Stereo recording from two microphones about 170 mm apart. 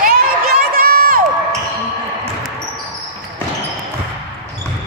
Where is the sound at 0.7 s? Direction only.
55° right (ahead or behind).